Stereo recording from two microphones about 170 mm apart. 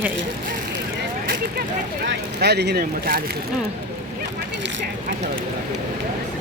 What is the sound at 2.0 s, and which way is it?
Speech, 75° right (ahead or behind).